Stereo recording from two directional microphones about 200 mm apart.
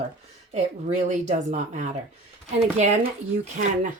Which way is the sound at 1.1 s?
35° right (ahead or behind).